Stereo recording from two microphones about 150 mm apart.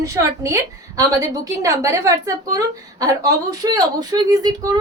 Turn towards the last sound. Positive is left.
turn(degrees=-25)  # may be behind; listen again after turning